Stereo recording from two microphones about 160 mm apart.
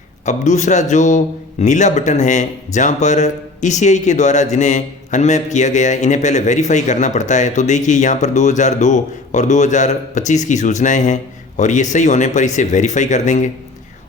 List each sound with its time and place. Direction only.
0.3 s a man's voice: 50° left (ahead or behind)